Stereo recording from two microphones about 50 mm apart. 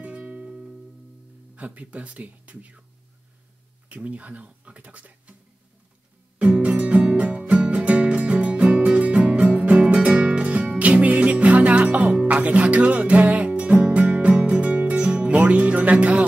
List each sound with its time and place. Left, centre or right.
0.0 s music: right
0.5 s music: centre
1.5 s speech: right
3.9 s speech: right
6.3 s music: right